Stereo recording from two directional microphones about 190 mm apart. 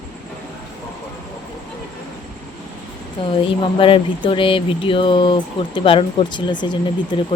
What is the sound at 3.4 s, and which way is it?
Speech, 25° left (ahead or behind).